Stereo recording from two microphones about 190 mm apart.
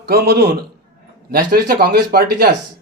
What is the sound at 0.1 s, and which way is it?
A man's voice, 55° right (ahead or behind).